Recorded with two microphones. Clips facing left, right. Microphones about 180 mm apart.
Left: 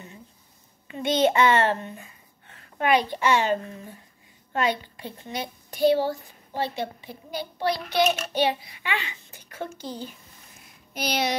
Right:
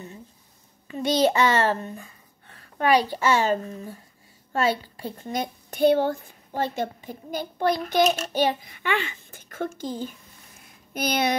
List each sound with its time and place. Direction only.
0.8 s a child's voice: 35° right (ahead or behind); by 11.3 s 55° right (ahead or behind)